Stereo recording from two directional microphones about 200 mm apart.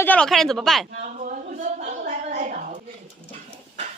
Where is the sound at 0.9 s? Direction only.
40° right (ahead or behind).